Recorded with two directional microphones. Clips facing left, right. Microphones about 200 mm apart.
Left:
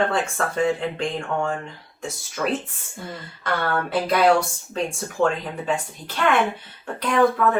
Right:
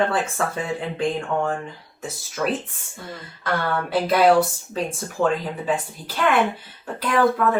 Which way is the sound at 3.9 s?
Centre (ahead or behind).